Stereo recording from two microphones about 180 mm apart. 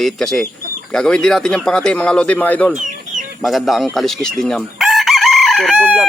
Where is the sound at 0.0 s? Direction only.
Centre (ahead or behind).